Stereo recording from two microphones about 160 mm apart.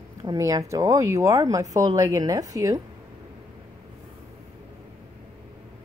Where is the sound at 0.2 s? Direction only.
25° right (ahead or behind).